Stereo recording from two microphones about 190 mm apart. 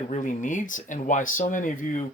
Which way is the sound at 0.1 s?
40° left (ahead or behind).